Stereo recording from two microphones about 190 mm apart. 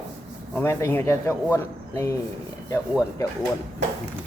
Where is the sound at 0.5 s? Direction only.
15° left (ahead or behind).